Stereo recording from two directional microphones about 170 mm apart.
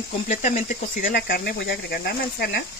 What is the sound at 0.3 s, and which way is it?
Speech, 50° left (ahead or behind).